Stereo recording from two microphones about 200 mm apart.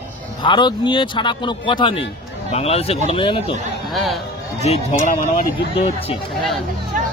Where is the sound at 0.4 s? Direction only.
20° left (ahead or behind).